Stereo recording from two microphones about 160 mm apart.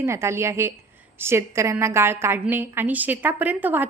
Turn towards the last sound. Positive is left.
turn(degrees=-10)  # may be behind; listen again after turning